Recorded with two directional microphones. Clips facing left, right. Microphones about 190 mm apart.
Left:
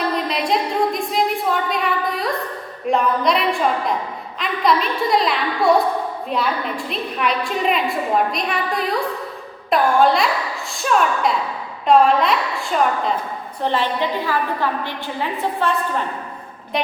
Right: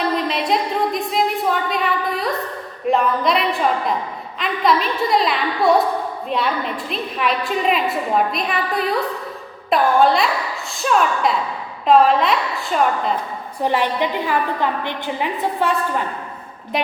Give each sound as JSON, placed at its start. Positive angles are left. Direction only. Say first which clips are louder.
{"t": 0.3, "sound": "a woman's voice", "louder": "even", "side_deg": 0}
{"t": 13.6, "sound": "a woman's voice", "louder": "right 2 dB", "side_deg": -15}
{"t": 16.7, "sound": "a woman's voice", "louder": "even", "side_deg": 0}